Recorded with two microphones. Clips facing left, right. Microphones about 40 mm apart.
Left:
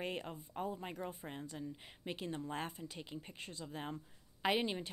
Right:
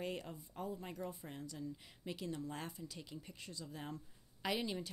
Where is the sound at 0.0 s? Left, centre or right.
Left.